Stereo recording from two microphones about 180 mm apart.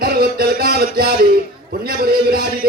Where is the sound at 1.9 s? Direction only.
55° right (ahead or behind).